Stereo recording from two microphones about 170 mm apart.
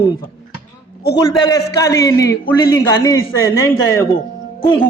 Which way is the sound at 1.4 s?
20° left (ahead or behind).